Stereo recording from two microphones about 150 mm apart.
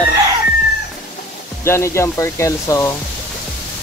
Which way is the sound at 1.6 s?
15° left (ahead or behind).